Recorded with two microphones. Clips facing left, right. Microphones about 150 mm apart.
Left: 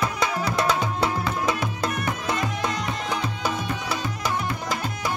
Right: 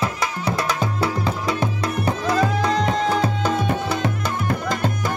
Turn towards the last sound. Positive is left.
turn(degrees=-50)  # may be behind; listen again after turning